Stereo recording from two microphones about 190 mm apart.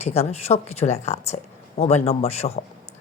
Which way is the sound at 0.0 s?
35° left (ahead or behind).